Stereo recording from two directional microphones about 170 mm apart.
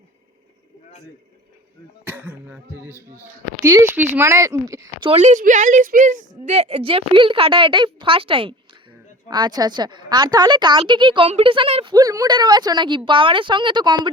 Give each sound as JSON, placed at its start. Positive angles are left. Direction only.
{"t": 2.0, "sound": "speech", "side_deg": -10}
{"t": 5.0, "sound": "a woman's voice", "side_deg": -40}